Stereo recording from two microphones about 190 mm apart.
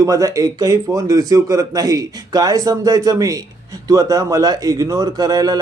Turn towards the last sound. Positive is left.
turn(degrees=-20)  # may be behind; listen again after turning